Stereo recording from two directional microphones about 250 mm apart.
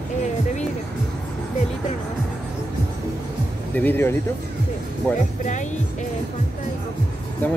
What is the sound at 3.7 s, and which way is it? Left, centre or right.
Speech, centre.